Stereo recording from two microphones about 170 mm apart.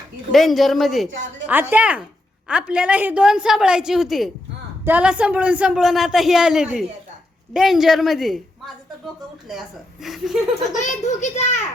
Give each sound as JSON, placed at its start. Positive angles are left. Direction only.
{"t": 0.3, "sound": "a woman's voice", "side_deg": 0}
{"t": 10.8, "sound": "a child's voice", "side_deg": 45}